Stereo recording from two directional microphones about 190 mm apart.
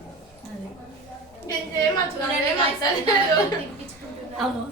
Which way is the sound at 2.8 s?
20° left (ahead or behind).